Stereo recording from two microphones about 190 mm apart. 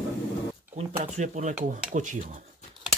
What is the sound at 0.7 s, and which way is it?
Speech, 40° right (ahead or behind).